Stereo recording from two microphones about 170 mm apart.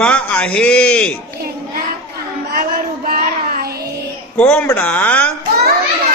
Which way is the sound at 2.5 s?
60° right (ahead or behind).